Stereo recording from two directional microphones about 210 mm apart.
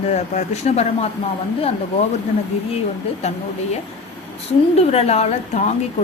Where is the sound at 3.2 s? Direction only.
30° left (ahead or behind).